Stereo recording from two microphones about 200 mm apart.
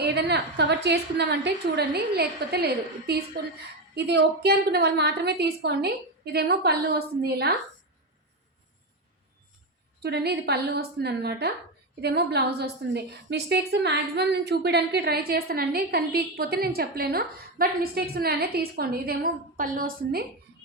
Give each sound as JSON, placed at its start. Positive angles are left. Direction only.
{"t": 0.0, "sound": "a woman's voice", "side_deg": -55}
{"t": 10.0, "sound": "a woman's voice", "side_deg": -55}